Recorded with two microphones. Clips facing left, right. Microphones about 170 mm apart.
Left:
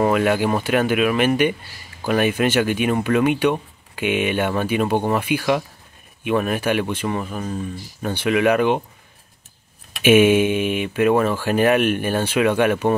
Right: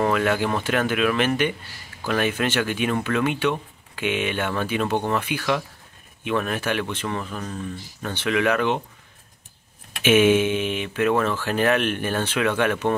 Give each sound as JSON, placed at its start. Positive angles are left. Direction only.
{"t": 0.0, "sound": "speech", "side_deg": 15}
{"t": 10.0, "sound": "speech", "side_deg": 10}